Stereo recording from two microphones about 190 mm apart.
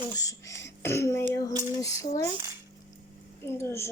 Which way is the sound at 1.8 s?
15° left (ahead or behind).